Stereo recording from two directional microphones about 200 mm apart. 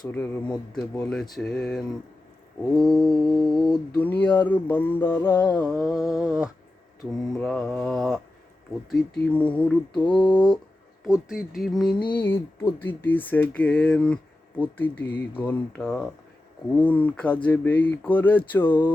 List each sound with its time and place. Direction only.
0.1 s speech: 10° left (ahead or behind)
0.7 s mantra: centre (ahead or behind)
9.3 s speech: 5° left (ahead or behind)
10.1 s speech: 25° left (ahead or behind)
11.0 s mantra: 5° right (ahead or behind)
12.1 s speech: 10° left (ahead or behind)